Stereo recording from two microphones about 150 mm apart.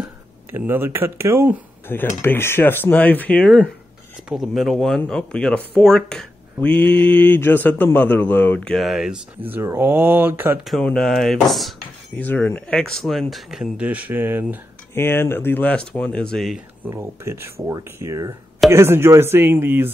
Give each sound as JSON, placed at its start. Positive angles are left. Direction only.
{"t": 0.5, "sound": "speech", "side_deg": -15}
{"t": 1.9, "sound": "speech", "side_deg": 15}
{"t": 9.4, "sound": "speech", "side_deg": -15}
{"t": 10.6, "sound": "speech", "side_deg": 0}
{"t": 12.2, "sound": "speech", "side_deg": 10}
{"t": 15.0, "sound": "speech", "side_deg": 15}
{"t": 16.8, "sound": "speech", "side_deg": -15}